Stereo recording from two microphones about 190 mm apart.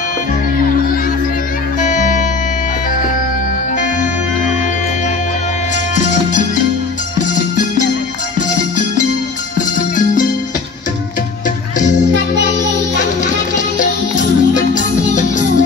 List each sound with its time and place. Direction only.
1.8 s music: 40° left (ahead or behind)
5.9 s music: 40° left (ahead or behind)
13.0 s music: 40° left (ahead or behind)